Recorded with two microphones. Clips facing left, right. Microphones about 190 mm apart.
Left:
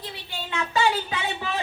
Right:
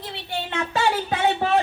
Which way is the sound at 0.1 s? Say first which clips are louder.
Right 9 dB; 60° right (ahead or behind).